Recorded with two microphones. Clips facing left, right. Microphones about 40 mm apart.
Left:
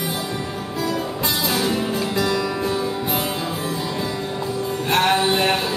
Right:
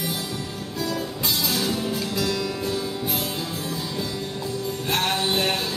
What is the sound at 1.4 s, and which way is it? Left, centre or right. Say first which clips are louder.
Music: left 5 dB; centre.